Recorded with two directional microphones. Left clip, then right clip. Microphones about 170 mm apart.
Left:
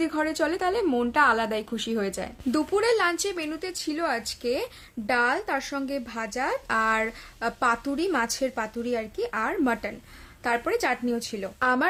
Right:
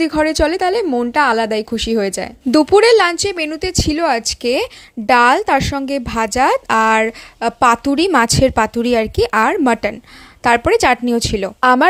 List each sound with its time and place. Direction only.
0.0 s a woman's voice: 40° right (ahead or behind)